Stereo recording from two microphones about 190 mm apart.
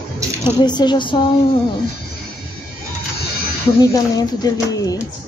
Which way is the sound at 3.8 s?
20° left (ahead or behind).